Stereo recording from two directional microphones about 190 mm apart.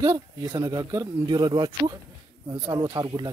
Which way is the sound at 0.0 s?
15° right (ahead or behind).